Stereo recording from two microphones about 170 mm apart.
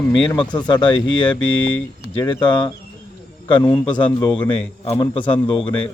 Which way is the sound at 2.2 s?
25° left (ahead or behind).